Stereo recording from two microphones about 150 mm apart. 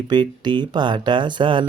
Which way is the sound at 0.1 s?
30° right (ahead or behind).